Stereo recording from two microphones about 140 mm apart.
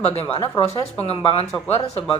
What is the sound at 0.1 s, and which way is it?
Speech, 45° left (ahead or behind).